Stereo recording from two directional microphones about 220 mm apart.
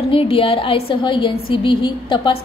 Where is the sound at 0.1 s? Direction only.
25° left (ahead or behind).